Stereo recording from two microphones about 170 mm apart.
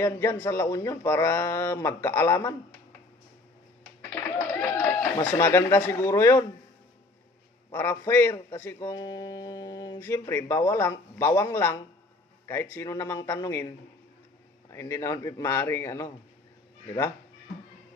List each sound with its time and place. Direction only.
0.0 s speech: 15° left (ahead or behind)
4.1 s a sound: 15° left (ahead or behind)
5.4 s speech: 15° left (ahead or behind)
7.7 s speech: 15° left (ahead or behind)
14.7 s speech: 15° left (ahead or behind)